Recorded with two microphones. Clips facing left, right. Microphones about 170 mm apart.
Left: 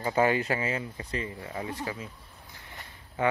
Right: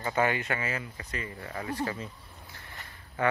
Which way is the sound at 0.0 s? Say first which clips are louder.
Left 3 dB; 30° left (ahead or behind).